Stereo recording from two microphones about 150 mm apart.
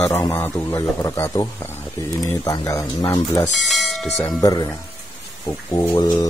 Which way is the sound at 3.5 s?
Centre (ahead or behind).